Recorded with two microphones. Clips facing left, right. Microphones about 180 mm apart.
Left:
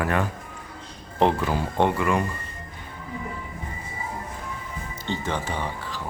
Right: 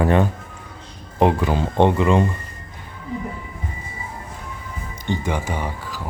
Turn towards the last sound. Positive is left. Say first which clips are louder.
# right 3 dB
turn(degrees=-10)  # may be behind; listen again after turning